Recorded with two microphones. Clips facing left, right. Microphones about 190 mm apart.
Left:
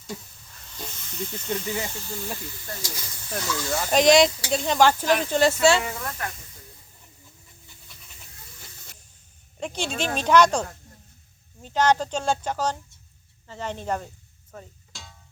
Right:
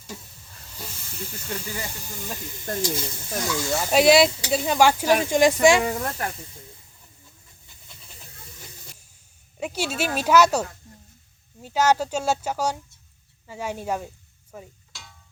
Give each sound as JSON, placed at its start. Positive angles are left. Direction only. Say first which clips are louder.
{"t": 0.7, "sound": "snake", "louder": "left 1 dB", "side_deg": -5}
{"t": 1.6, "sound": "speech", "louder": "left 4 dB", "side_deg": 20}
{"t": 2.0, "sound": "speech", "louder": "left 2 dB", "side_deg": -15}
{"t": 5.8, "sound": "speech", "louder": "right 6 dB", "side_deg": -35}
{"t": 9.6, "sound": "speech", "louder": "right 2 dB", "side_deg": -5}